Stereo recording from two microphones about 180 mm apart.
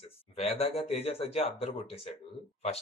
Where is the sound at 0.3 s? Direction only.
35° left (ahead or behind).